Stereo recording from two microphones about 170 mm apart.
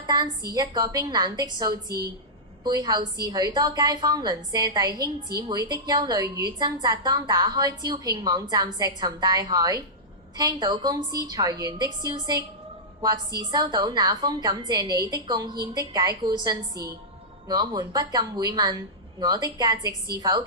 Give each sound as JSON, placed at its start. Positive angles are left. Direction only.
{"t": 0.5, "sound": "a woman's voice", "side_deg": -25}